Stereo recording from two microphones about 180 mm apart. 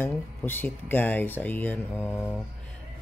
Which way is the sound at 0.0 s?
10° left (ahead or behind).